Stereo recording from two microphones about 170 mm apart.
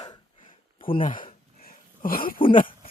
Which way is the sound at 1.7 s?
60° left (ahead or behind).